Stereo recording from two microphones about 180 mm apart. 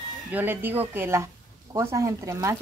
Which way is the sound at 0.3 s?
10° right (ahead or behind).